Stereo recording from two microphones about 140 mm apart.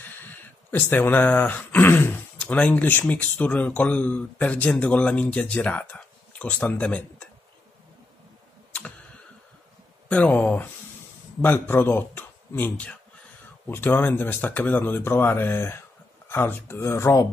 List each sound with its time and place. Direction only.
0.2 s speech: 15° left (ahead or behind)
10.0 s speech: 10° left (ahead or behind)